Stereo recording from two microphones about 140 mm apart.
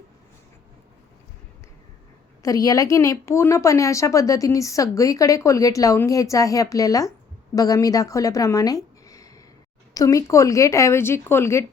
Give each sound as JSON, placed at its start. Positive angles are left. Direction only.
{"t": 2.4, "sound": "a woman's voice", "side_deg": 25}